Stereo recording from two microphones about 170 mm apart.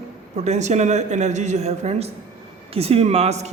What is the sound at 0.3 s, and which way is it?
Speech, 40° right (ahead or behind).